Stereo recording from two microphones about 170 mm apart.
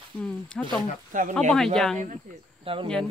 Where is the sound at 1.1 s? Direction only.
50° right (ahead or behind).